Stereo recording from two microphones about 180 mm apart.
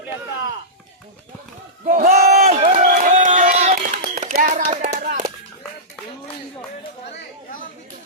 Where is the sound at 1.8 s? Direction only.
45° right (ahead or behind).